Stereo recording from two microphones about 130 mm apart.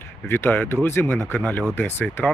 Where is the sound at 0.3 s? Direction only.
15° left (ahead or behind).